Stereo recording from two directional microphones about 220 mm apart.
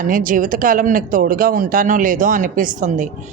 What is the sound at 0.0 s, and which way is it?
A man's voice, 40° right (ahead or behind).